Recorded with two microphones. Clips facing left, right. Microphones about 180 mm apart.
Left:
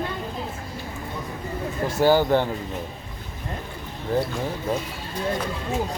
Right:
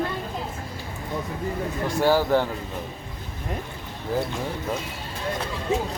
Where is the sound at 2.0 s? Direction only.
Centre (ahead or behind).